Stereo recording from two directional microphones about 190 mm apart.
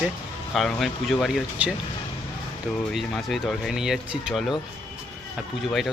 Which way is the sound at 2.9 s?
Centre (ahead or behind).